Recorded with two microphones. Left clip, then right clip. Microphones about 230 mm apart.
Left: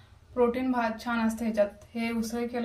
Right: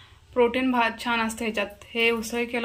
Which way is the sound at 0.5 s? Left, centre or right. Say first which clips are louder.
Right 6 dB; right.